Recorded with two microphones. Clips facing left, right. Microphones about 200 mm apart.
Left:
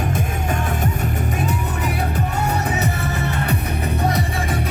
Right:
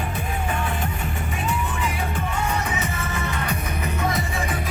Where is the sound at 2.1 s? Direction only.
40° left (ahead or behind).